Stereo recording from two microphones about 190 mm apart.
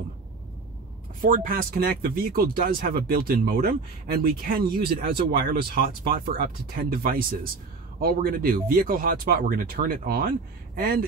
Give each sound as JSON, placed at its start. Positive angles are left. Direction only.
{"t": 1.2, "sound": "speech", "side_deg": -50}